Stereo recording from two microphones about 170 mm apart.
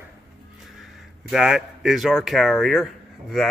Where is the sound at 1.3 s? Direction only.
5° right (ahead or behind).